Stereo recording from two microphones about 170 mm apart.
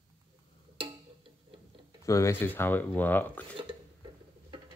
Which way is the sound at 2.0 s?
20° left (ahead or behind).